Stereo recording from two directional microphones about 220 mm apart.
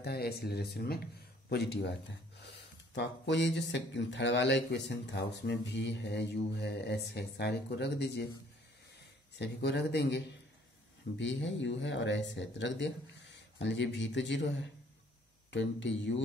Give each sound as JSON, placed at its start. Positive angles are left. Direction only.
{"t": 0.0, "sound": "speech", "side_deg": 45}
{"t": 9.4, "sound": "speech", "side_deg": 50}